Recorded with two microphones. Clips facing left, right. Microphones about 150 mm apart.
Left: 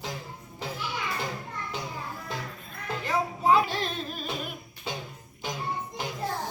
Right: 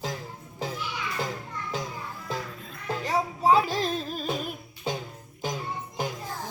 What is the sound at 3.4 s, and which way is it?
Music, 40° right (ahead or behind).